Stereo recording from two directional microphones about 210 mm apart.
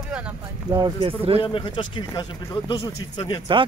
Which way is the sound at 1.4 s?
20° left (ahead or behind).